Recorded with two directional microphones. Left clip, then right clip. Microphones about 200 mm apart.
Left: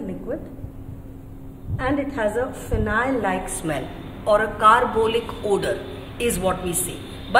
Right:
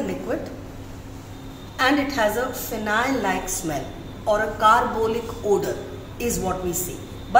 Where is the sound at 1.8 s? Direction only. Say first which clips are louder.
Right 4 dB; centre (ahead or behind).